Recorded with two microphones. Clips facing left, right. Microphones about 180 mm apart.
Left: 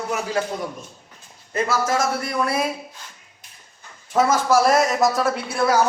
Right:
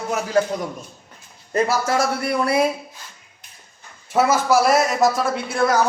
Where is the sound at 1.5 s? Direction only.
40° right (ahead or behind).